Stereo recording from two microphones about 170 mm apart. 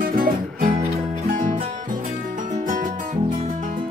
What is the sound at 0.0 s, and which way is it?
Music, 55° right (ahead or behind).